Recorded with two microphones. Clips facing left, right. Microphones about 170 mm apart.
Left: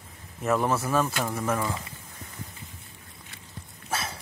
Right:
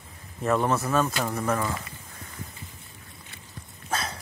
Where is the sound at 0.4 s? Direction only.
5° left (ahead or behind).